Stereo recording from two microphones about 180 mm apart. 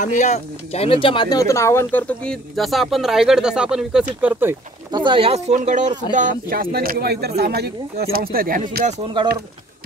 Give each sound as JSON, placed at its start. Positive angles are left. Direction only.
{"t": 0.0, "sound": "speech", "side_deg": 40}
{"t": 4.9, "sound": "speech", "side_deg": -25}
{"t": 9.0, "sound": "speech", "side_deg": -30}